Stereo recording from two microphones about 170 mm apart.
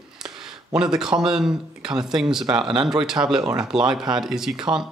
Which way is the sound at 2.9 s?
5° right (ahead or behind).